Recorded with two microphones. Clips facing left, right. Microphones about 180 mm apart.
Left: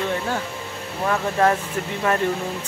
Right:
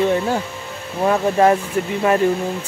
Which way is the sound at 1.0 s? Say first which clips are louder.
Right 5 dB; 20° right (ahead or behind).